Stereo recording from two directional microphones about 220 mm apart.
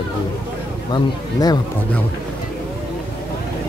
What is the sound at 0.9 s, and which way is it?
Speech, 20° left (ahead or behind).